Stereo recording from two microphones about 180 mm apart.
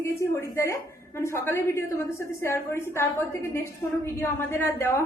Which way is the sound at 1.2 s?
15° left (ahead or behind).